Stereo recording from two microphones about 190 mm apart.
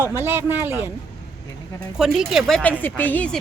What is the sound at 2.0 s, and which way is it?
Speech, centre (ahead or behind).